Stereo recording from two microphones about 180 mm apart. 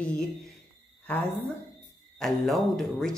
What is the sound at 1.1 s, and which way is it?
A woman's voice, 5° left (ahead or behind).